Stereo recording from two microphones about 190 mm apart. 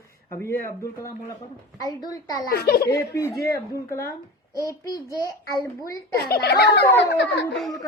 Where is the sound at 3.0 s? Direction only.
15° left (ahead or behind).